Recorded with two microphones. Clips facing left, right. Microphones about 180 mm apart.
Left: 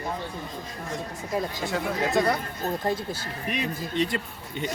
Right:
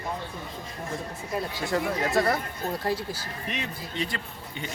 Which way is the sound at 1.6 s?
Centre (ahead or behind).